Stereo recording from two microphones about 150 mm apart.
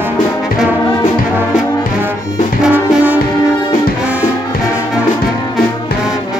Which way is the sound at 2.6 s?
10° right (ahead or behind).